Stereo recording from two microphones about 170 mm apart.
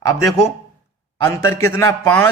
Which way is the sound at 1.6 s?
15° left (ahead or behind).